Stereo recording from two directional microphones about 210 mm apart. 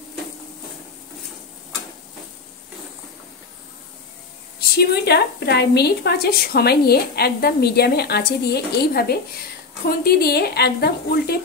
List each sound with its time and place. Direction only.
4.6 s a woman's voice: 50° left (ahead or behind)